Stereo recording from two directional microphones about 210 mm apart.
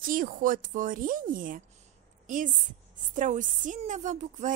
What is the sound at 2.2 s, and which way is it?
Speech, 40° right (ahead or behind).